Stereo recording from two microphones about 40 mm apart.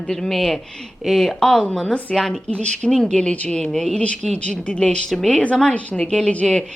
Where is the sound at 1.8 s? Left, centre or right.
Left.